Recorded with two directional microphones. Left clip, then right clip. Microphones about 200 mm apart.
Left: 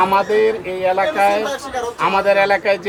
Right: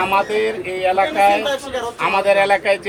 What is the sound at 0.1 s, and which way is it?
A man's voice, 5° left (ahead or behind).